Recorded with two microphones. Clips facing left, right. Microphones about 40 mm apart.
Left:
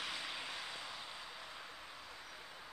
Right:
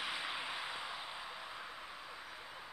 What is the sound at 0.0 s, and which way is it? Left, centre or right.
Vehicle, centre.